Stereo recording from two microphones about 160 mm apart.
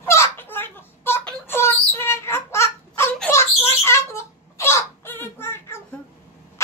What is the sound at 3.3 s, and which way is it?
Wail, 15° left (ahead or behind).